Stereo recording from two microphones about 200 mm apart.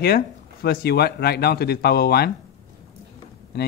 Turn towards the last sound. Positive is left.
turn(degrees=50)  # may be behind; listen again after turning